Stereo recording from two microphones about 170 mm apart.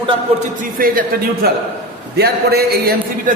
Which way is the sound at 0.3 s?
55° right (ahead or behind).